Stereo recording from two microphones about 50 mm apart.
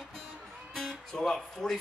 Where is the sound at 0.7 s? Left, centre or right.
Centre.